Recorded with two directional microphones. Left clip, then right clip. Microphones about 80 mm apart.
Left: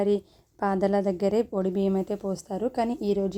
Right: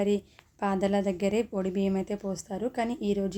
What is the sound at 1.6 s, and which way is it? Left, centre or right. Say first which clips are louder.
A woman's voice: left 4 dB; left.